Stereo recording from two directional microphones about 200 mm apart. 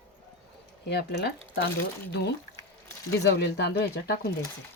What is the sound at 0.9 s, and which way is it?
Speech, 55° left (ahead or behind).